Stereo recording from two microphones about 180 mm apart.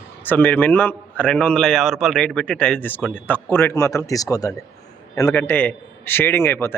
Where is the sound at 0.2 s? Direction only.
10° left (ahead or behind).